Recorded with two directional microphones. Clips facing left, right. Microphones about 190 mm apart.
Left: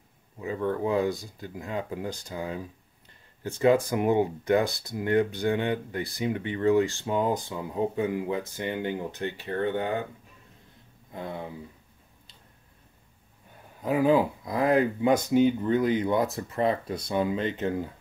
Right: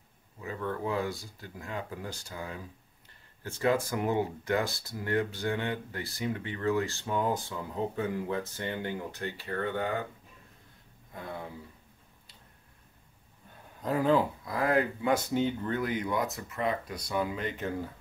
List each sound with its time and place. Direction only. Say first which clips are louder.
0.4 s speech: left 6 dB; 20° left (ahead or behind)
11.1 s speech: left 4 dB; 20° left (ahead or behind)
13.7 s speech: left 4 dB; 10° left (ahead or behind)